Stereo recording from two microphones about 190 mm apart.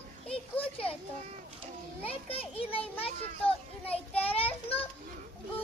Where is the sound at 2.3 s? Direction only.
30° left (ahead or behind).